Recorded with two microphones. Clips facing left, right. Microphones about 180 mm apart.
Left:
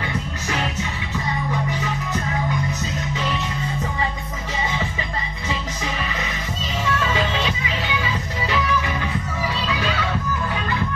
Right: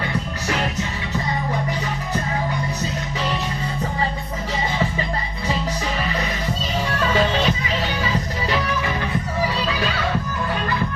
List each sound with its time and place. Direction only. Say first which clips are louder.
6.8 s music: right 2 dB; 40° right (ahead or behind)